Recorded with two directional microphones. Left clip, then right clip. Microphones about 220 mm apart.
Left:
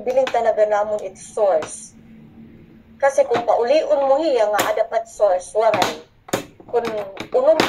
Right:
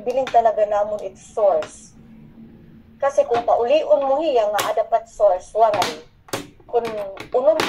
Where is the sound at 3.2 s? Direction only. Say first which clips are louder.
Right 2 dB; 30° left (ahead or behind).